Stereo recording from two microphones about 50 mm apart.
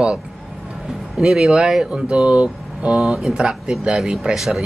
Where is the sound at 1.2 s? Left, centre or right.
Centre.